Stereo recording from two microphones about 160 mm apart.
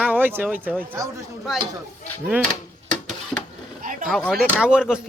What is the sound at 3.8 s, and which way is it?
Vehicle, 60° right (ahead or behind).